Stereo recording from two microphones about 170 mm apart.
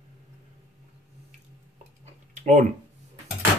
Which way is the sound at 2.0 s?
45° right (ahead or behind).